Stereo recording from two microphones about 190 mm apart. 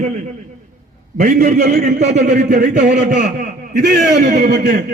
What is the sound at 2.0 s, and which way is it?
Speech, 60° right (ahead or behind).